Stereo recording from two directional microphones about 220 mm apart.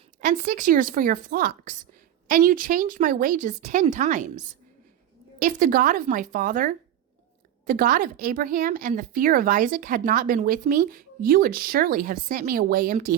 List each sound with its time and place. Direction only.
0.2 s speech: 35° right (ahead or behind)